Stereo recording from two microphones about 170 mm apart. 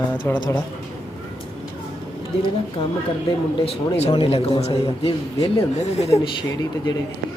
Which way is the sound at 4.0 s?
35° left (ahead or behind).